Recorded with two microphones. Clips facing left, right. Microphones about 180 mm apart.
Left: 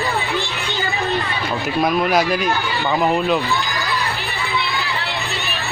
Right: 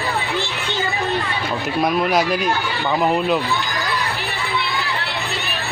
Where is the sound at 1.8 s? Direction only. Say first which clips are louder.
Left 1 dB; centre (ahead or behind).